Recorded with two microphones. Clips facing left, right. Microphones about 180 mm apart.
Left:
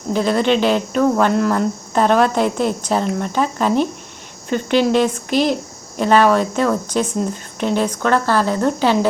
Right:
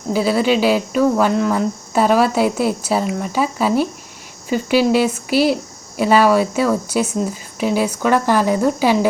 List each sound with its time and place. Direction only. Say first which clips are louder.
0.1 s speech: even; 5° right (ahead or behind)